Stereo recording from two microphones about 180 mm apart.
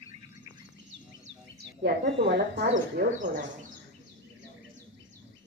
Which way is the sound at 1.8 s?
65° right (ahead or behind).